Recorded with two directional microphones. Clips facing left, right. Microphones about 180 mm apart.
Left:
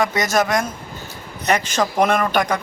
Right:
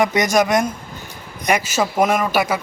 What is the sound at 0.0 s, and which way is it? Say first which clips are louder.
A man's voice: right 2 dB; 20° right (ahead or behind).